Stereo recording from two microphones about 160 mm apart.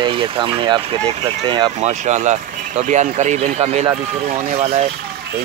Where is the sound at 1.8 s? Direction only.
45° right (ahead or behind).